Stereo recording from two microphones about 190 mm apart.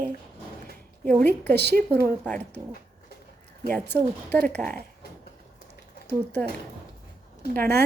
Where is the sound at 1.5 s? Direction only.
60° right (ahead or behind).